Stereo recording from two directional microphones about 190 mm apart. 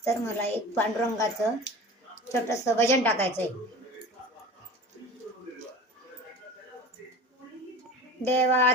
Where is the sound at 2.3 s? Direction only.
15° left (ahead or behind).